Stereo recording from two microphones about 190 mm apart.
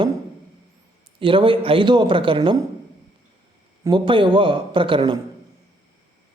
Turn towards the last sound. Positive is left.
turn(degrees=-25)  # may be behind; listen again after turning